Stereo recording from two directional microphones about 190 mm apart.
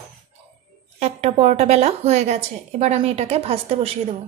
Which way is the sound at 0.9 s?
35° right (ahead or behind).